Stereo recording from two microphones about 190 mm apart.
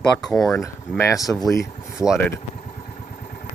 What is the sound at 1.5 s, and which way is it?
Speech, 15° left (ahead or behind).